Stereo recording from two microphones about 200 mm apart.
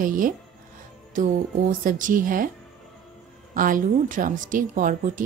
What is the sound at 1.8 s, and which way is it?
Speech, 40° right (ahead or behind).